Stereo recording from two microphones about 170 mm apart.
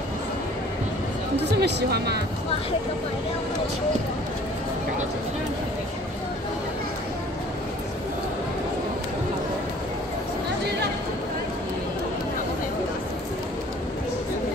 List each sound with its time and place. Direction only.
1.4 s speech: 75° right (ahead or behind)